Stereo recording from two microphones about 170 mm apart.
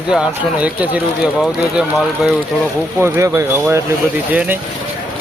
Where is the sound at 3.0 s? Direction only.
15° right (ahead or behind).